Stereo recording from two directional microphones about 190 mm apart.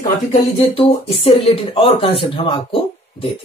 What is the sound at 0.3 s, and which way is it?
Speech, 30° left (ahead or behind).